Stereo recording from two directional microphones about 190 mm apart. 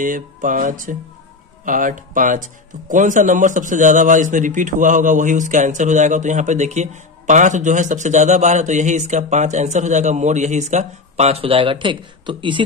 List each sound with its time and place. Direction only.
0.0 s music: 45° right (ahead or behind)
1.7 s speech: 45° right (ahead or behind); by 12.6 s 25° right (ahead or behind)